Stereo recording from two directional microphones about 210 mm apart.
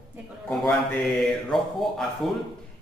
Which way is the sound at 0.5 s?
Centre (ahead or behind).